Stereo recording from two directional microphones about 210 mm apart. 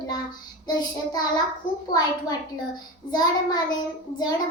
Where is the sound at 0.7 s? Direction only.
20° left (ahead or behind).